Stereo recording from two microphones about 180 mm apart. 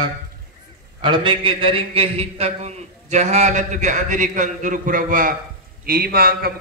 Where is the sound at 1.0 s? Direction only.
25° right (ahead or behind).